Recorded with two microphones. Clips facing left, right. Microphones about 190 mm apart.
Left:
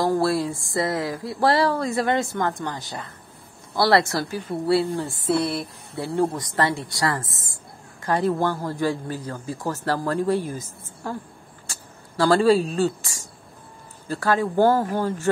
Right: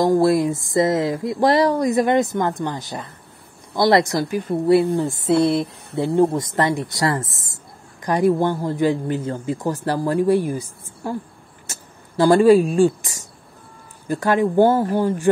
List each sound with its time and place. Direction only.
0.0 s a man's voice: 15° right (ahead or behind)